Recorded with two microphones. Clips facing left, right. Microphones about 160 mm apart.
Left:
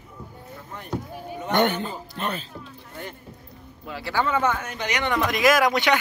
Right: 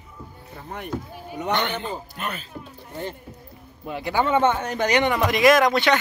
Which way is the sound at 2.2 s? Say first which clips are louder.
Left 6 dB; 30° left (ahead or behind).